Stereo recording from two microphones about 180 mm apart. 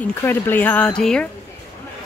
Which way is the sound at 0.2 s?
10° left (ahead or behind).